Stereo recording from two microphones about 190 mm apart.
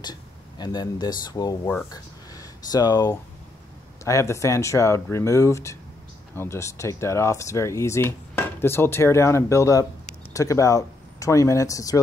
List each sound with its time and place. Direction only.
0.0 s speech: 20° left (ahead or behind)